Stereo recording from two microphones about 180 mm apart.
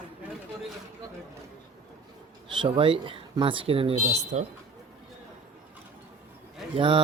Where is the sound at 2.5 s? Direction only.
30° right (ahead or behind).